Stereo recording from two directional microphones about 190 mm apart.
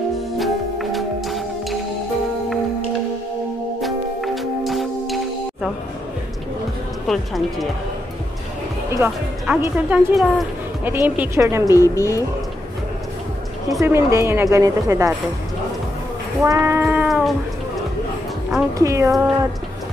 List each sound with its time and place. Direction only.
0.4 s music: centre (ahead or behind)
3.8 s music: centre (ahead or behind)
7.1 s speech: centre (ahead or behind)
8.9 s a woman's voice: 15° right (ahead or behind)
11.7 s speech: 15° left (ahead or behind)
13.7 s a woman's voice: 15° right (ahead or behind)
16.4 s a woman's voice: 15° right (ahead or behind)
16.8 s cat: 5° right (ahead or behind)
18.8 s a woman's voice: 15° right (ahead or behind)